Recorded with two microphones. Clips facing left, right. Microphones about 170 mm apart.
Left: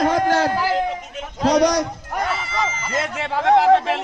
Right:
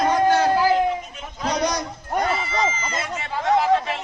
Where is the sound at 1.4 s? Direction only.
80° left.